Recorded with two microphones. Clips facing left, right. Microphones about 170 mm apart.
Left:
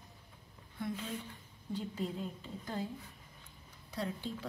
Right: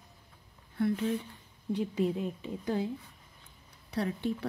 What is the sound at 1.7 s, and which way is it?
A woman's voice, 70° right (ahead or behind).